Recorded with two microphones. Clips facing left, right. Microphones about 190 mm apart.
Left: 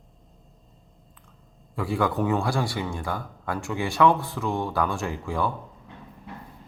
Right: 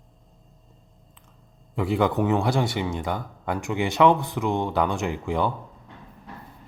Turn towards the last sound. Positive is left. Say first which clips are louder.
# right 3 dB
turn(degrees=-20)  # may be behind; listen again after turning